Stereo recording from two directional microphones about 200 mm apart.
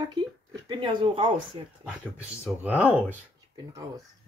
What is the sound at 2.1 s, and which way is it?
Speech, 5° right (ahead or behind).